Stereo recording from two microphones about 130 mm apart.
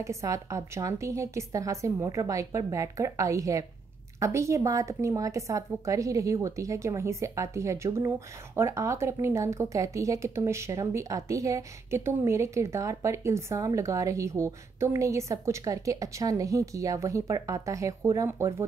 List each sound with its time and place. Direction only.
0.0 s speech: 25° right (ahead or behind)